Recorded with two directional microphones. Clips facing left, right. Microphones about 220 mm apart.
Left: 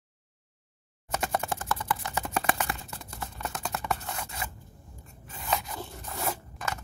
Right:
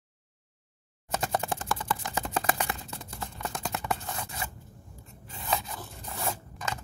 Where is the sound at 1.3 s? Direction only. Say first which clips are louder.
Right 1 dB; 20° right (ahead or behind).